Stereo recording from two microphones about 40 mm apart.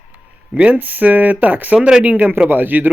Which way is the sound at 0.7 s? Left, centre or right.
Right.